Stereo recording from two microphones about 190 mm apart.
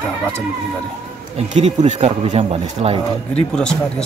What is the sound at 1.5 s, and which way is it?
Speech, 40° right (ahead or behind).